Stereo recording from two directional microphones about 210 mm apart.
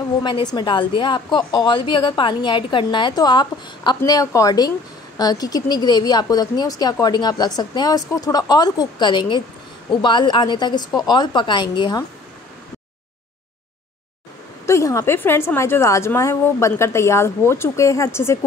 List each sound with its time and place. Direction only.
0.2 s a woman's voice: 20° left (ahead or behind)
14.7 s a woman's voice: 15° left (ahead or behind)